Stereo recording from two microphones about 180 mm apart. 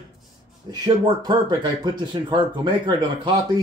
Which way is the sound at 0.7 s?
20° right (ahead or behind).